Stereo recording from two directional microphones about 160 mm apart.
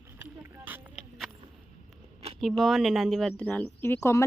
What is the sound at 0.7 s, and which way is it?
Clip-clop, centre (ahead or behind).